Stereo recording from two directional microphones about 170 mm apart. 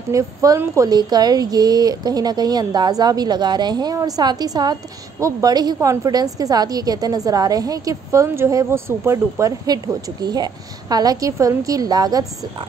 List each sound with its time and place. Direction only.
0.1 s a woman's voice: 20° right (ahead or behind)